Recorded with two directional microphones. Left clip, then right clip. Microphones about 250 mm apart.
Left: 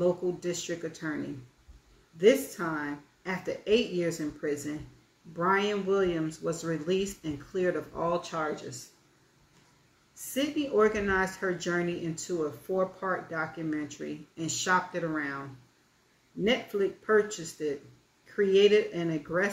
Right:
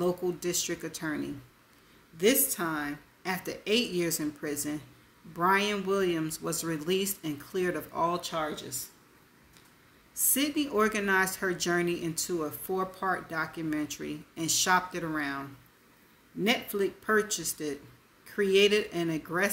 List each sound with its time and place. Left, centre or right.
0.0 s speech: right
2.1 s speech: right
10.3 s speech: right
16.4 s speech: right